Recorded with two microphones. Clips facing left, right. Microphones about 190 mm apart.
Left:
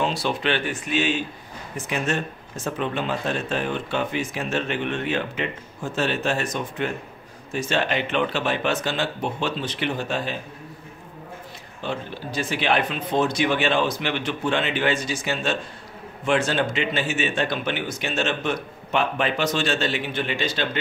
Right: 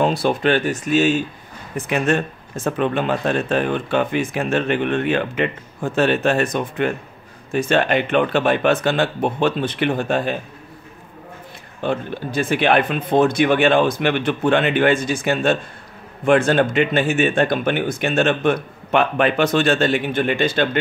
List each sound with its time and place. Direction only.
0.0 s speech: 50° right (ahead or behind)
1.8 s speech: 60° right (ahead or behind)
11.8 s speech: 55° right (ahead or behind)